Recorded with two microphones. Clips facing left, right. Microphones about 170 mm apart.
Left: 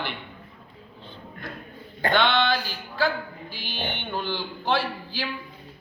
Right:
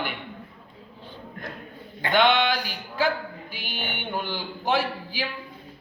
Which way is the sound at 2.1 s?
15° right (ahead or behind).